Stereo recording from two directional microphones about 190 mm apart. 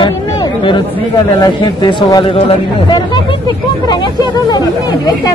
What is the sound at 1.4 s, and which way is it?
Speech, 25° left (ahead or behind).